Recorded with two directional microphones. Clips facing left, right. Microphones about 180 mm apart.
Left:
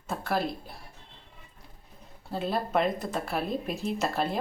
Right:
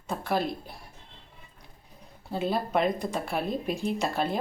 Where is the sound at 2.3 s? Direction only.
Centre (ahead or behind).